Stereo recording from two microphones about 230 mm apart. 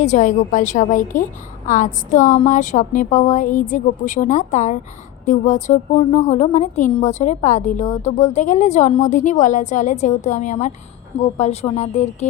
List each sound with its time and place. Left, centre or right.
0.0 s a woman's voice: left